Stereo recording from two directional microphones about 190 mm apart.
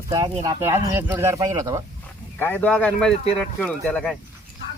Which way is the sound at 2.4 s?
10° left (ahead or behind).